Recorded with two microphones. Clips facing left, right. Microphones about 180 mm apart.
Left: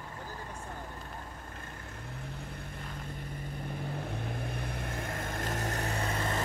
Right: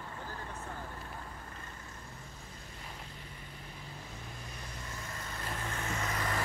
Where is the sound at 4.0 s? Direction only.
60° left (ahead or behind); by 6.4 s 30° left (ahead or behind).